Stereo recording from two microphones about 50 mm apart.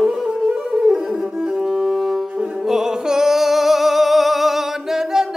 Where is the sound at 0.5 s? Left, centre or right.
Centre.